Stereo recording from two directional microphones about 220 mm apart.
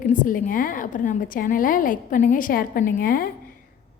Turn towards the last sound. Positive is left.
turn(degrees=40)  # may be behind; listen again after turning